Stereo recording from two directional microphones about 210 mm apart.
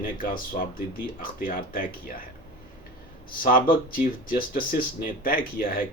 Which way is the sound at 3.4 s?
40° left (ahead or behind).